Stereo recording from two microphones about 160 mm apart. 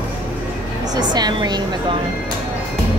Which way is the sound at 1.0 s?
25° right (ahead or behind).